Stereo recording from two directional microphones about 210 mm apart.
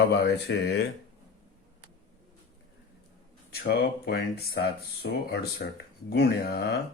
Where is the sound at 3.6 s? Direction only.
50° left (ahead or behind).